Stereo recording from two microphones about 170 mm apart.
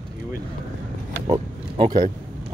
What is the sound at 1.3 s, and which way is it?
Speech, 25° right (ahead or behind).